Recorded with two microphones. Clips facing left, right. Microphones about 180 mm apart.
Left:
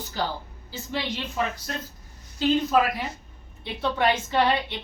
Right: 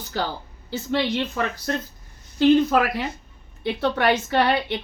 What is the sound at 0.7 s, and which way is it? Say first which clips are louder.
Speech: right 7 dB; 70° right (ahead or behind).